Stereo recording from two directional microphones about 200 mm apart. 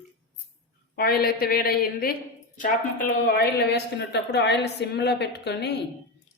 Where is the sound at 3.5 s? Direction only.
55° left (ahead or behind).